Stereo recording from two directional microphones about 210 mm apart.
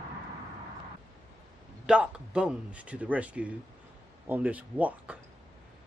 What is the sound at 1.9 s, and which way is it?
Speech, 5° right (ahead or behind).